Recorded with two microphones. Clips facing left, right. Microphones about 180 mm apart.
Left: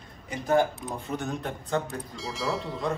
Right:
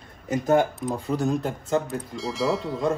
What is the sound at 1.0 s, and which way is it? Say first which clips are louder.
Speech: right 8 dB; 35° right (ahead or behind).